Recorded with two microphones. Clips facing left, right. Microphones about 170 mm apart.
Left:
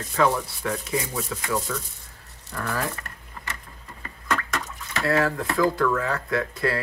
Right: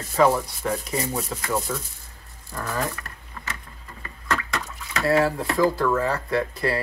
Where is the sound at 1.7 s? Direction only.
15° right (ahead or behind).